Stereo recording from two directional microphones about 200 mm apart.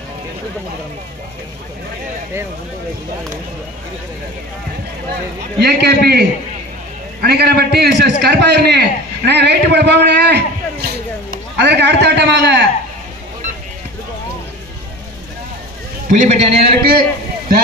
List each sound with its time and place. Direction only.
5.6 s a man's voice: 50° right (ahead or behind)
16.1 s a man's voice: 35° right (ahead or behind)
16.6 s a man's voice: 50° right (ahead or behind)